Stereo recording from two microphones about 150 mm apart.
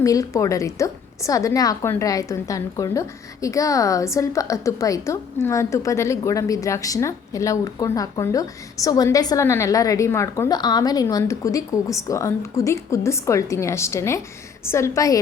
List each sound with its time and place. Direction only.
0.0 s a woman's voice: 20° left (ahead or behind)